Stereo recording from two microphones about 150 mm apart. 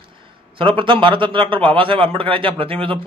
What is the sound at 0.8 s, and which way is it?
Speech, 35° right (ahead or behind).